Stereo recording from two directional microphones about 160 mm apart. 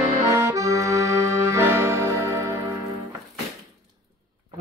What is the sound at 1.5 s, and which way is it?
Music, 15° right (ahead or behind).